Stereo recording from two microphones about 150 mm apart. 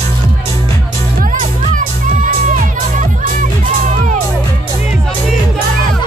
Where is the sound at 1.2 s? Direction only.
60° right (ahead or behind).